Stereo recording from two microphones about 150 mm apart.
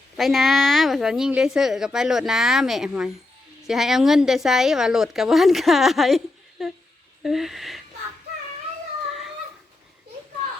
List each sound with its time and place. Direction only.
0.2 s speech: centre (ahead or behind)